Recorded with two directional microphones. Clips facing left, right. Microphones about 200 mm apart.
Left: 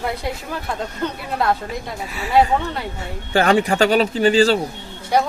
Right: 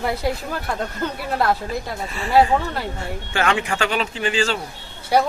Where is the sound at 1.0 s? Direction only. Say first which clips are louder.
Even; 5° right (ahead or behind).